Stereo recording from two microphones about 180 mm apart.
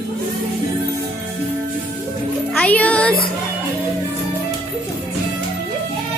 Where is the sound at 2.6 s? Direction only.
5° left (ahead or behind).